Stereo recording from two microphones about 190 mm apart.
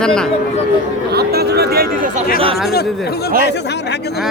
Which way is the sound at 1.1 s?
55° right (ahead or behind).